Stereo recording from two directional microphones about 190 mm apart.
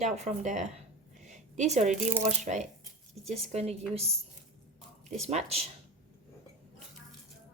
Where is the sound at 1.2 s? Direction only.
40° right (ahead or behind).